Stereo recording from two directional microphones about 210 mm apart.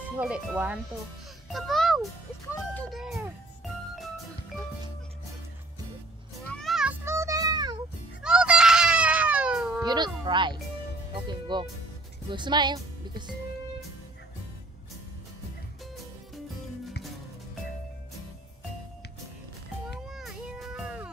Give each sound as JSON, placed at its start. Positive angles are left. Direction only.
{"t": 0.2, "sound": "speech", "side_deg": -5}
{"t": 6.5, "sound": "children playing", "side_deg": 0}
{"t": 8.2, "sound": "baby cry", "side_deg": -5}
{"t": 9.8, "sound": "a woman's voice", "side_deg": -20}
{"t": 20.1, "sound": "a sound", "side_deg": 0}